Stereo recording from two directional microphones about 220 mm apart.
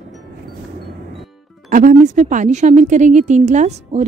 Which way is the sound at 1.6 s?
35° right (ahead or behind).